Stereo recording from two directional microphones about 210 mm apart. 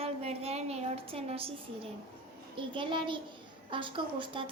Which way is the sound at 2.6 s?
25° right (ahead or behind).